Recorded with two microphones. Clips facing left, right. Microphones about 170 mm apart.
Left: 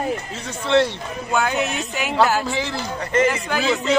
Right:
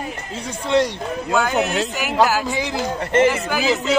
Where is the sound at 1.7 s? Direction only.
90° right.